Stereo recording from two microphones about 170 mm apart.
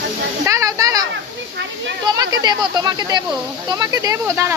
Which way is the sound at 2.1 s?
25° right (ahead or behind).